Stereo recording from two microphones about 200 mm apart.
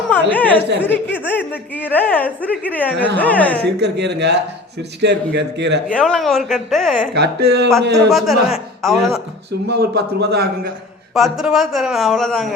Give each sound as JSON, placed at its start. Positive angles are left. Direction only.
{"t": 0.1, "sound": "speech", "side_deg": 10}
{"t": 3.8, "sound": "a man's voice", "side_deg": -55}
{"t": 5.9, "sound": "a man's voice", "side_deg": 5}
{"t": 7.1, "sound": "a man's voice", "side_deg": -55}
{"t": 8.1, "sound": "a man's voice", "side_deg": 0}
{"t": 9.6, "sound": "a man's voice", "side_deg": -55}
{"t": 11.1, "sound": "a man's voice", "side_deg": 0}